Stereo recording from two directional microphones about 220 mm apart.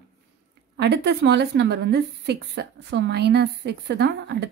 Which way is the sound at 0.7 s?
50° right (ahead or behind).